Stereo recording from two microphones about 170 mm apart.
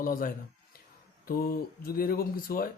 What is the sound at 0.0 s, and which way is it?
Speech, 55° left (ahead or behind).